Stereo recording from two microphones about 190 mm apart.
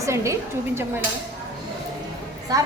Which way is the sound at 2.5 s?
20° right (ahead or behind).